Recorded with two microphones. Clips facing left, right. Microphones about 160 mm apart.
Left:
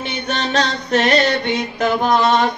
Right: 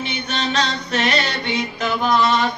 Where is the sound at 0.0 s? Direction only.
55° left (ahead or behind).